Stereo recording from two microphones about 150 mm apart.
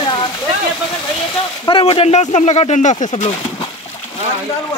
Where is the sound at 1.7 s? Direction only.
35° left (ahead or behind); by 3.3 s 50° left (ahead or behind).